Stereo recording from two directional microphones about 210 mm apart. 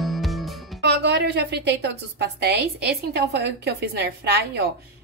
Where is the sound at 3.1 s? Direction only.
50° right (ahead or behind).